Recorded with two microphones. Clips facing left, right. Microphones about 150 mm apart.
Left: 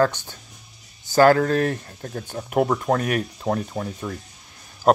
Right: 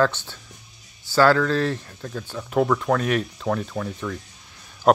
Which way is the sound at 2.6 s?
30° left (ahead or behind).